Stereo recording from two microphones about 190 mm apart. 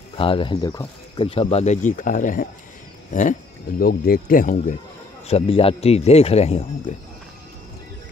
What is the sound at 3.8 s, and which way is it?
Speech, 50° left (ahead or behind).